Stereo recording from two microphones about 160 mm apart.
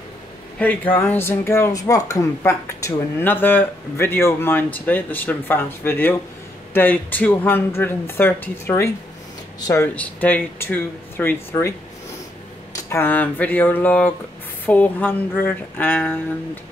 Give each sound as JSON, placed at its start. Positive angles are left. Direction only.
{"t": 0.6, "sound": "speech", "side_deg": 10}
{"t": 12.9, "sound": "speech", "side_deg": 10}